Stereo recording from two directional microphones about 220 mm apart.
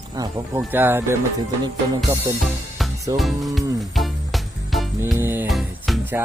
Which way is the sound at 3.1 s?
Centre (ahead or behind).